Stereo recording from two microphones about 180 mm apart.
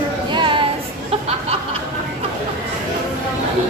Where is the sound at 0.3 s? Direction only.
25° right (ahead or behind).